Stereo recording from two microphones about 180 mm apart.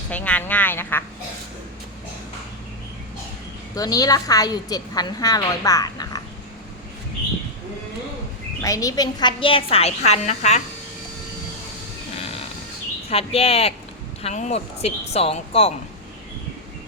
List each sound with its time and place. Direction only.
0.1 s speech: 10° left (ahead or behind)
3.8 s a woman's voice: 20° left (ahead or behind)
8.6 s a woman's voice: 20° left (ahead or behind); by 10.6 s 40° left (ahead or behind)
12.1 s a sound: 35° left (ahead or behind)
13.1 s speech: 35° left (ahead or behind)